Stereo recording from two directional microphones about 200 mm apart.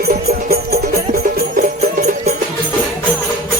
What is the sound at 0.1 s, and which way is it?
Music, 50° right (ahead or behind).